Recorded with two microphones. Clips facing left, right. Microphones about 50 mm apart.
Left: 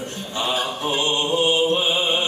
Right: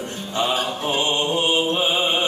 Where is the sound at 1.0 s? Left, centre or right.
Right.